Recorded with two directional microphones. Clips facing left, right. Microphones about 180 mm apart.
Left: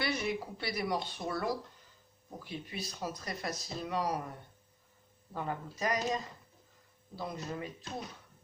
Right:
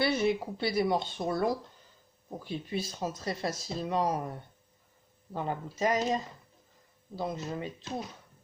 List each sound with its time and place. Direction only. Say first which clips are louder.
0.0 s speech: right 7 dB; 30° right (ahead or behind)
5.3 s speech: right 4 dB; 25° right (ahead or behind)
7.2 s speech: right 4 dB; 25° right (ahead or behind)